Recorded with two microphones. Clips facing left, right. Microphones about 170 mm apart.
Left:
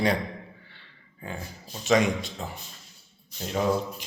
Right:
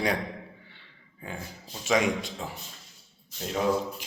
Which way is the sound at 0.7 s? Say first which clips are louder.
Even; 10° right (ahead or behind).